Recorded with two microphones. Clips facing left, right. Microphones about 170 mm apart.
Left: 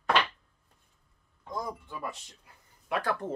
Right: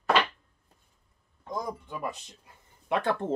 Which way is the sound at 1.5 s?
20° right (ahead or behind).